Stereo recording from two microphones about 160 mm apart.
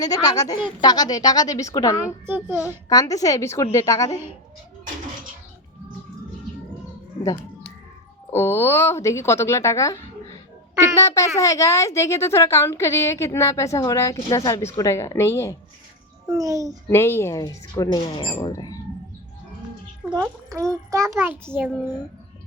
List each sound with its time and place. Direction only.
0.0 s a woman's voice: 20° left (ahead or behind)
2.2 s a child's voice: 15° right (ahead or behind)
2.9 s a woman's voice: 20° left (ahead or behind)
8.3 s a woman's voice: 15° left (ahead or behind)
16.3 s a child's voice: 20° right (ahead or behind)
16.9 s a woman's voice: 15° left (ahead or behind)
20.0 s a child's voice: 10° right (ahead or behind)